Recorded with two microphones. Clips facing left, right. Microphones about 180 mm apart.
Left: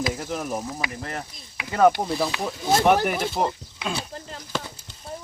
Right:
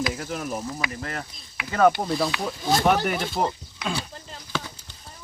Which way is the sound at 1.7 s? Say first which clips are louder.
Left 1 dB; 10° left (ahead or behind).